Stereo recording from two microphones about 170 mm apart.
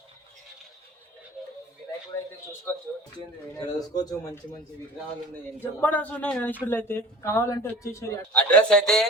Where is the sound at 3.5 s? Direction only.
20° left (ahead or behind).